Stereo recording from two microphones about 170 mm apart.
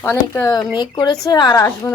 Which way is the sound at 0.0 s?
15° left (ahead or behind).